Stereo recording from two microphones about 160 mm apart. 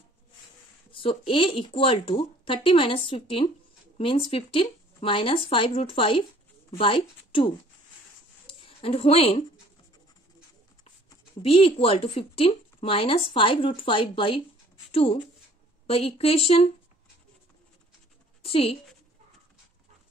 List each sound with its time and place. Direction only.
0.9 s a woman's voice: 35° left (ahead or behind)
8.5 s a sound: 35° left (ahead or behind)
11.4 s a woman's voice: 35° left (ahead or behind)
18.4 s a woman's voice: 35° left (ahead or behind)